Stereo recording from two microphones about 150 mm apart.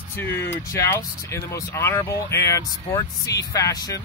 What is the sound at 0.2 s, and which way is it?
Speech, 15° left (ahead or behind).